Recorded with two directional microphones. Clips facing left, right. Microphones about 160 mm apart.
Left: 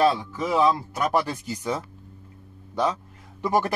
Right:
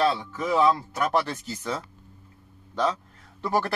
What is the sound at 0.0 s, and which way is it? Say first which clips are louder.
Speech: left 3 dB; 10° left (ahead or behind).